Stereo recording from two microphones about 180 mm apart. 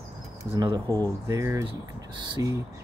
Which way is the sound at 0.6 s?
20° right (ahead or behind).